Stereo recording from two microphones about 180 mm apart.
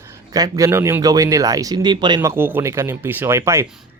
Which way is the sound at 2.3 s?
10° right (ahead or behind).